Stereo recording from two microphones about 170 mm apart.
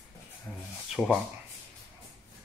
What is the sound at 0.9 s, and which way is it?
Speech, centre (ahead or behind).